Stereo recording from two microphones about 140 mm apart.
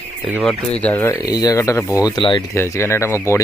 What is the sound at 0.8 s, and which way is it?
Speech, 10° left (ahead or behind).